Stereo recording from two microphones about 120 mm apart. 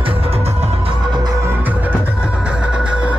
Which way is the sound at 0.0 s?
50° right (ahead or behind).